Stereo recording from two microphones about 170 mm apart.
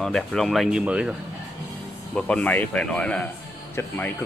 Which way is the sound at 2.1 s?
5° left (ahead or behind).